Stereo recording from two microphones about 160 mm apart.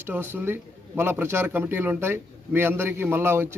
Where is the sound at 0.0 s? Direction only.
15° right (ahead or behind).